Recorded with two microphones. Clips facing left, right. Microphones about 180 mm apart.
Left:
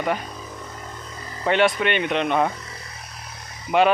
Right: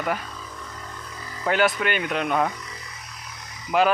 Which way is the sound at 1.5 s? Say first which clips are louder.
Left 2 dB; centre (ahead or behind).